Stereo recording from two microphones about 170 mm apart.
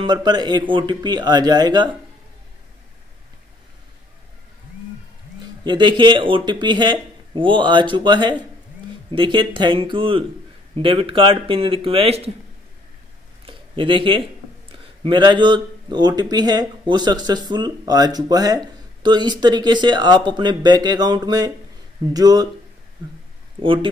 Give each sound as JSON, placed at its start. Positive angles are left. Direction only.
{"t": 0.0, "sound": "speech", "side_deg": -25}
{"t": 5.4, "sound": "speech", "side_deg": -25}
{"t": 13.5, "sound": "speech", "side_deg": -30}
{"t": 23.6, "sound": "speech", "side_deg": -30}